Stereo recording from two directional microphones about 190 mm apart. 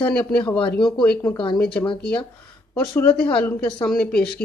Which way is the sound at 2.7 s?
10° left (ahead or behind).